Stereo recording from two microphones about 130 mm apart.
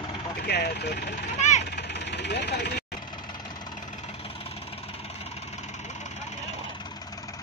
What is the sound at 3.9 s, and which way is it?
Vehicle, 55° left (ahead or behind).